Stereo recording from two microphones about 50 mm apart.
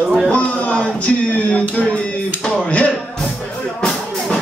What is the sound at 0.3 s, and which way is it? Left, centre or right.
Speech, left.